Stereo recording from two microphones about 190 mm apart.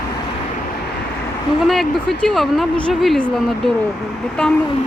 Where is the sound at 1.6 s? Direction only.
Centre (ahead or behind).